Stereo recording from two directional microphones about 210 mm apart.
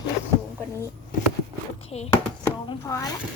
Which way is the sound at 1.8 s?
30° left (ahead or behind).